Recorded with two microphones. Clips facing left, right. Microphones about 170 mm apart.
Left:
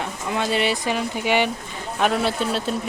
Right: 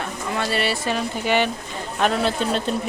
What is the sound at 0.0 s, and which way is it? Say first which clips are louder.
Speech: left 1 dB; 15° left (ahead or behind).